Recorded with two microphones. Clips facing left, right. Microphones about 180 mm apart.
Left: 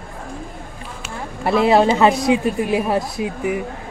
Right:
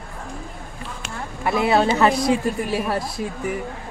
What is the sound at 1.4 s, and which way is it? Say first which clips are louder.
A woman's voice: left 4 dB; 25° left (ahead or behind).